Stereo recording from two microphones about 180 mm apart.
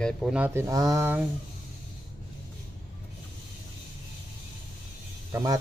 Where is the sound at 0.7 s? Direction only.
20° right (ahead or behind).